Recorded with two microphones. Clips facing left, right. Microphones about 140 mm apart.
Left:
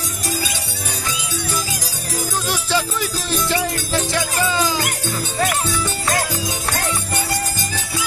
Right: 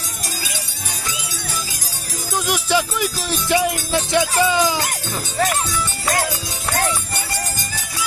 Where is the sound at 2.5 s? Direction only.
15° right (ahead or behind).